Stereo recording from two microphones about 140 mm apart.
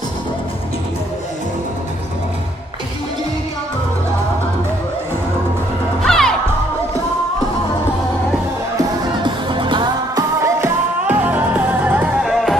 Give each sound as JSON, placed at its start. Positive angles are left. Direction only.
{"t": 6.0, "sound": "music", "side_deg": 5}
{"t": 9.2, "sound": "music", "side_deg": -35}
{"t": 10.4, "sound": "music", "side_deg": -15}